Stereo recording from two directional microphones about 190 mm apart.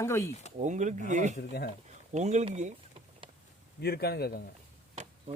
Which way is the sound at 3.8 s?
55° left (ahead or behind).